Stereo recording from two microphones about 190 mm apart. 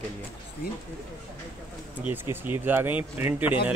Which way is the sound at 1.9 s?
10° right (ahead or behind).